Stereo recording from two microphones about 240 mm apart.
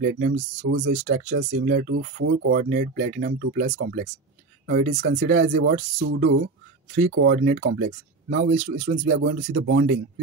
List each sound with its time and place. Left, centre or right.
0.0 s speech: right
4.6 s speech: right
5.0 s speech: right
8.5 s speech: right
8.9 s speech: right